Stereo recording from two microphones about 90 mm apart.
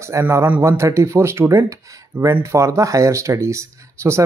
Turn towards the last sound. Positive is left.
turn(degrees=-30)  # may be behind; listen again after turning